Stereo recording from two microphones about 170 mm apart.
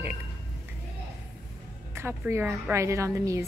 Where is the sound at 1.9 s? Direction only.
15° right (ahead or behind).